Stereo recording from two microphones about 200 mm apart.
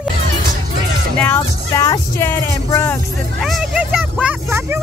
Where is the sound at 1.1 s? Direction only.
10° left (ahead or behind).